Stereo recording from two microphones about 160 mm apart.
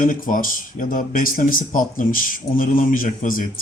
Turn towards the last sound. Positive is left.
turn(degrees=60)  # may be behind; listen again after turning